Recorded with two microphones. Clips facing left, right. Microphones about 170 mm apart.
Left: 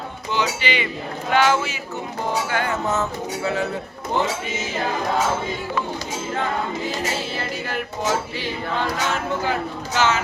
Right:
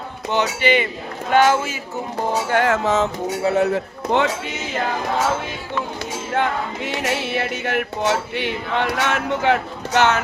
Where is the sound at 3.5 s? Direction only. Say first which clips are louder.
Right 7 dB; 80° right.